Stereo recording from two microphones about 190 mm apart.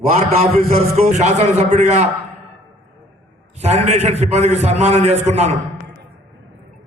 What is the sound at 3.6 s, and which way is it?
A man's voice, 35° right (ahead or behind).